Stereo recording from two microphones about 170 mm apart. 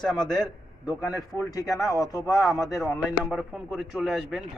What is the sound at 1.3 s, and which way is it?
Speech, 20° left (ahead or behind).